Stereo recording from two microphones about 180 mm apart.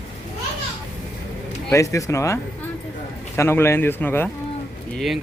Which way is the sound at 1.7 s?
15° left (ahead or behind).